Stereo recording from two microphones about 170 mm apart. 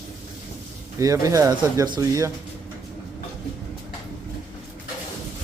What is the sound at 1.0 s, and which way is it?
Speech, 20° right (ahead or behind).